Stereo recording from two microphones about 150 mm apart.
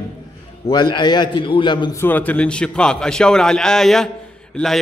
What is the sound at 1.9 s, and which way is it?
A man's voice, 15° left (ahead or behind).